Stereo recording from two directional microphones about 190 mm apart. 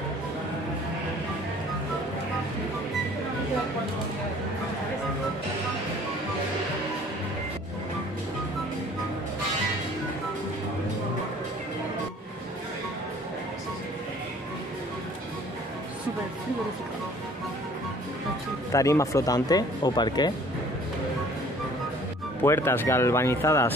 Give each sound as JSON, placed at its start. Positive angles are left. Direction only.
{"t": 18.7, "sound": "speech", "side_deg": 15}
{"t": 22.4, "sound": "speech", "side_deg": 10}